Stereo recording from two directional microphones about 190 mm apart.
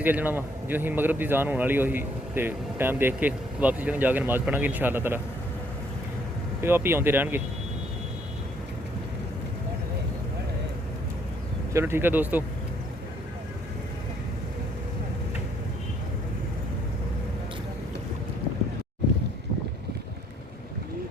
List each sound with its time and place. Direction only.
0.0 s a man's voice: 10° right (ahead or behind)
6.6 s a man's voice: 10° right (ahead or behind)
11.7 s a man's voice: 15° right (ahead or behind)